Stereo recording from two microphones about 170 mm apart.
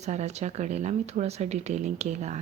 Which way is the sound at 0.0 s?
40° right (ahead or behind).